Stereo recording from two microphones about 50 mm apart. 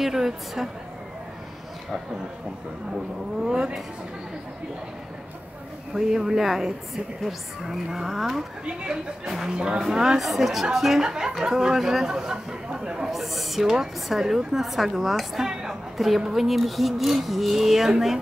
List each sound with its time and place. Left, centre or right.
0.0 s speech: centre
3.4 s speech: centre
5.9 s speech: centre
7.2 s a sound: centre
9.5 s speech: centre
13.1 s speech: centre
16.0 s a sound: centre